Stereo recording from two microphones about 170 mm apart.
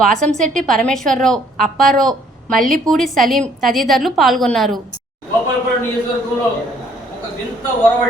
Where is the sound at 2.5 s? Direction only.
55° right (ahead or behind).